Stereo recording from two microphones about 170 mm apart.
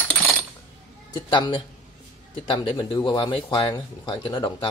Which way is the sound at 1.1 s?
25° left (ahead or behind).